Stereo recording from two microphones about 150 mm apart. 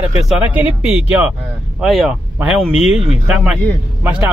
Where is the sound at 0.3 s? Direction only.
10° right (ahead or behind).